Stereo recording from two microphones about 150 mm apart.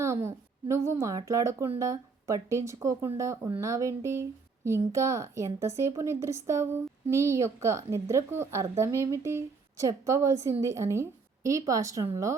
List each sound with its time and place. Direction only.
0.0 s a woman's voice: 20° right (ahead or behind)